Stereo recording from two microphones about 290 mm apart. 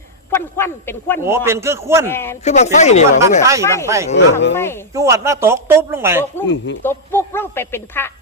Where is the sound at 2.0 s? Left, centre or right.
Centre.